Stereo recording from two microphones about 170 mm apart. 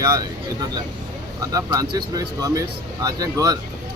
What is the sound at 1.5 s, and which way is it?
Speech, 20° right (ahead or behind).